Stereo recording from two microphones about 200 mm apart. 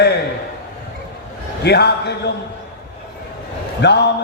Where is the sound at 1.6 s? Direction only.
55° left (ahead or behind).